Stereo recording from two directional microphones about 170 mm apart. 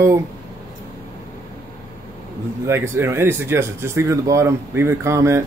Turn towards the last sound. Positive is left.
turn(degrees=-15)  # may be behind; listen again after turning